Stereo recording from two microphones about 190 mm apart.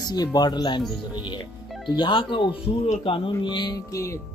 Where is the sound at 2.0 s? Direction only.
25° left (ahead or behind).